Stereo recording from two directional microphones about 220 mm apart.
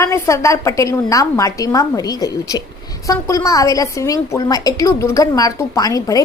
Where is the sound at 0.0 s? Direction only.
15° left (ahead or behind).